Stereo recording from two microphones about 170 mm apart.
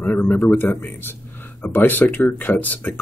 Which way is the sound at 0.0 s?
10° left (ahead or behind).